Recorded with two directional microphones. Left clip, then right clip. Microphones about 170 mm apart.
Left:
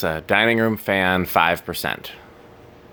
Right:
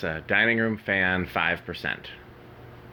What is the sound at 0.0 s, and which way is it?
Speech, 35° left (ahead or behind).